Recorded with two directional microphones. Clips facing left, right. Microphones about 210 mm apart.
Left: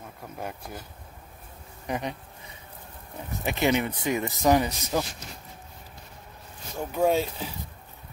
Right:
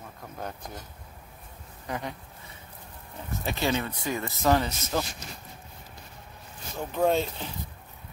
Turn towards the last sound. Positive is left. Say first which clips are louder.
# left 1 dB
turn(degrees=5)  # may be behind; listen again after turning